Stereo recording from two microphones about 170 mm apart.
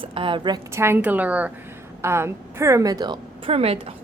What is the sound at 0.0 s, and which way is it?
A woman's voice, 30° right (ahead or behind).